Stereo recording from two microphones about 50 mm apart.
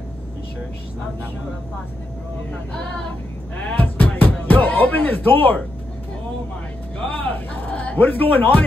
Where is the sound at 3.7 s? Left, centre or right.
Left.